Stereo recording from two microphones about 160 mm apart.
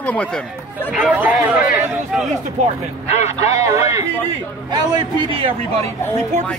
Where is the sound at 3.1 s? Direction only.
45° left (ahead or behind).